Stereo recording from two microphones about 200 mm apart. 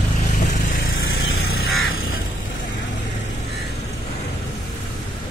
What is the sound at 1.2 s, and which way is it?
Vehicle, 90° left.